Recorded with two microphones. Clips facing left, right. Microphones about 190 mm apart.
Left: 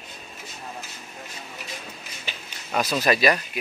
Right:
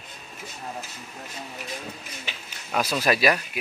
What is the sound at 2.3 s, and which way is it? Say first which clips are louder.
Speech: left 1 dB; 5° right (ahead or behind).